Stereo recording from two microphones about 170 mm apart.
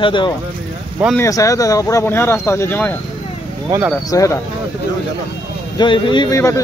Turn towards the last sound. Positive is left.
turn(degrees=20)  # may be behind; listen again after turning